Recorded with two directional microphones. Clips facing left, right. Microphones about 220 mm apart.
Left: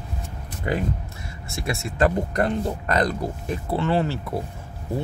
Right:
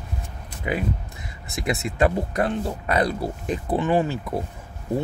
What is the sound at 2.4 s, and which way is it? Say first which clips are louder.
Speech: left 1 dB; 5° right (ahead or behind).